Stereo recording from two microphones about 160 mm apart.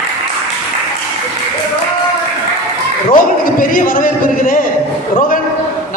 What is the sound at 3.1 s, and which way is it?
A man's voice, 60° left (ahead or behind).